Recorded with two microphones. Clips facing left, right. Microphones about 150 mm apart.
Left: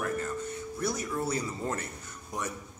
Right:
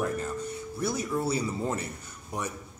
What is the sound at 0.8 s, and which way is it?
A man's voice, 10° right (ahead or behind).